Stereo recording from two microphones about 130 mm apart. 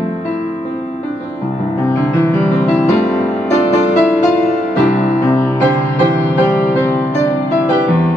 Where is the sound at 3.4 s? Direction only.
65° left (ahead or behind).